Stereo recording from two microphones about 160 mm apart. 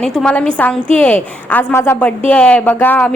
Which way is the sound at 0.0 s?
5° left (ahead or behind).